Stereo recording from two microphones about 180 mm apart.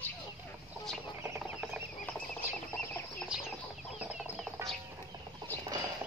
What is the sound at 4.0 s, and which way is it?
Chicken, 5° right (ahead or behind).